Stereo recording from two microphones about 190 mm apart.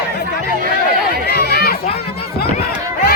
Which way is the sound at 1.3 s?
55° left (ahead or behind).